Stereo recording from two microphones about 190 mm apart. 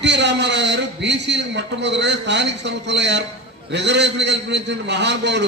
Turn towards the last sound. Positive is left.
turn(degrees=-65)  # may be behind; listen again after turning